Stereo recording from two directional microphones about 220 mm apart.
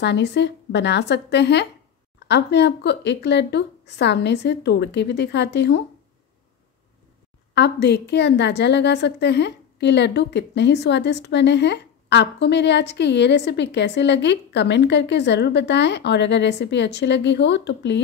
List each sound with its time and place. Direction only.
0.0 s a woman's voice: 50° left (ahead or behind)
7.5 s a woman's voice: 50° left (ahead or behind)